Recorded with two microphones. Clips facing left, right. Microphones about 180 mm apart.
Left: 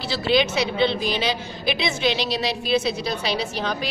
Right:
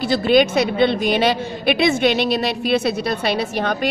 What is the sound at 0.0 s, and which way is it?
A woman's voice, 50° right (ahead or behind).